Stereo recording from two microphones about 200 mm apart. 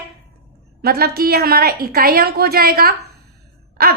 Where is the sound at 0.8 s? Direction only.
50° right (ahead or behind).